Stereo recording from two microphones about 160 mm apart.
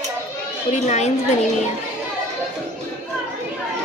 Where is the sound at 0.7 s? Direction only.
45° left (ahead or behind).